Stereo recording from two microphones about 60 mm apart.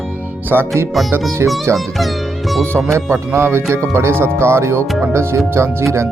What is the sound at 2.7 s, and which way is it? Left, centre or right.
Speech, right.